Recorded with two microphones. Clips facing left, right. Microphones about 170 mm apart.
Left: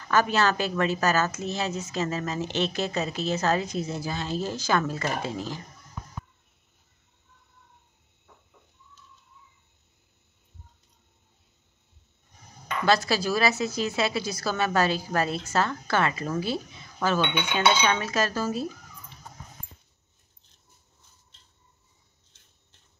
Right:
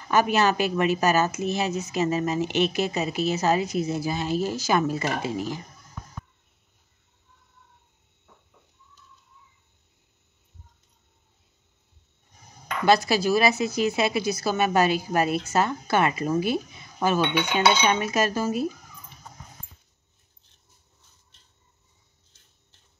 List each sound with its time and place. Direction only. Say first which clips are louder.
0.0 s a woman's voice: right 2 dB; 15° right (ahead or behind)
12.8 s a woman's voice: right 3 dB; 15° right (ahead or behind)